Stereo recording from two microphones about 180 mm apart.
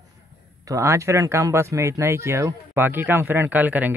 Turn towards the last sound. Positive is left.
turn(degrees=-10)  # may be behind; listen again after turning